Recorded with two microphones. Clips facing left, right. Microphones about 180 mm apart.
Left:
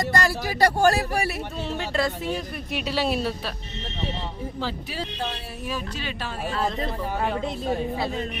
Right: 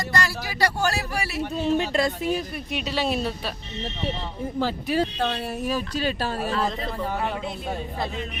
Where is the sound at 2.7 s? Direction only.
5° left (ahead or behind).